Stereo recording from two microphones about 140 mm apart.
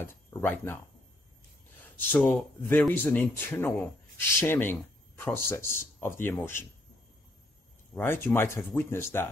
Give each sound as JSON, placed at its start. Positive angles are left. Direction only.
{"t": 0.0, "sound": "speech", "side_deg": 15}
{"t": 2.0, "sound": "speech", "side_deg": 15}
{"t": 7.9, "sound": "speech", "side_deg": 15}